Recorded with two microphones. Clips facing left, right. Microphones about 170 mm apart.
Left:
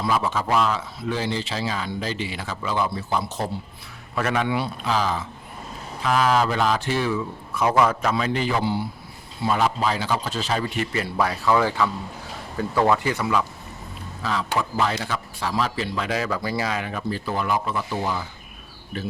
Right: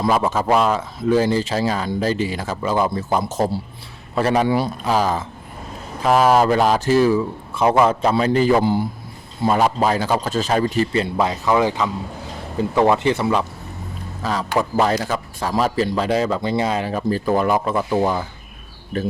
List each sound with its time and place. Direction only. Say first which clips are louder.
0.0 s a man's voice: right 5 dB; 45° right (ahead or behind); by 13.4 s 25° right (ahead or behind)
14.2 s a man's voice: right 4 dB; 40° right (ahead or behind)